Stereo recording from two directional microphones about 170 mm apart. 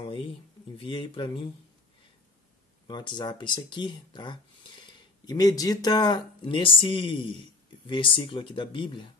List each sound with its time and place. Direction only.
0.0 s a sound: 30° left (ahead or behind)
0.7 s speech: 30° left (ahead or behind)
2.9 s speech: 25° left (ahead or behind)